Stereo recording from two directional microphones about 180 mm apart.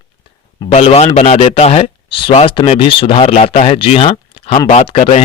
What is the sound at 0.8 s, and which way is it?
Speech, 35° left (ahead or behind).